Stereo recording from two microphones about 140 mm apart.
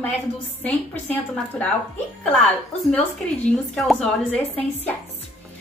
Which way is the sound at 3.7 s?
5° left (ahead or behind).